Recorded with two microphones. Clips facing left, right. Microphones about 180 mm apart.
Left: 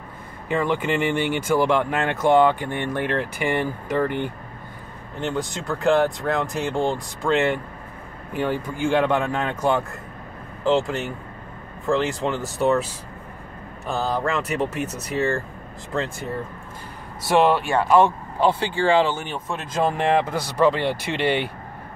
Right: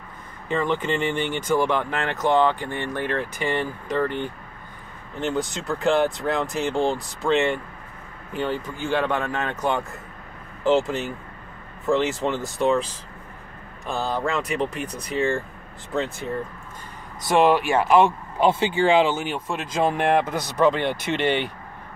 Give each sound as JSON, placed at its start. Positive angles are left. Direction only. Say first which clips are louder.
{"t": 0.5, "sound": "speech", "louder": "left 1 dB", "side_deg": 10}
{"t": 5.3, "sound": "speech", "louder": "right 1 dB", "side_deg": 0}
{"t": 8.3, "sound": "speech", "louder": "left 2 dB", "side_deg": 10}
{"t": 10.6, "sound": "speech", "louder": "even", "side_deg": -5}
{"t": 17.4, "sound": "speech", "louder": "right 1 dB", "side_deg": -15}
{"t": 19.2, "sound": "speech", "louder": "right 2 dB", "side_deg": -5}